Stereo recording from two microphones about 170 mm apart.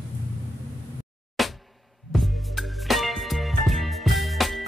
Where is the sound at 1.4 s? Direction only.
Centre (ahead or behind).